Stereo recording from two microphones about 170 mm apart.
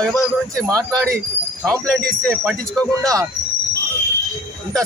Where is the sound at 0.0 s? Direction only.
Centre (ahead or behind).